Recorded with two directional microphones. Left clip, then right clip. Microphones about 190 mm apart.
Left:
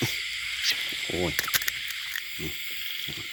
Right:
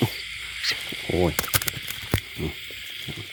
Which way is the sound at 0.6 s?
25° right (ahead or behind).